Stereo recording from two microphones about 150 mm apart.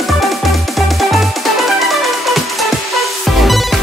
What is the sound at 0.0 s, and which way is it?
Music, centre (ahead or behind).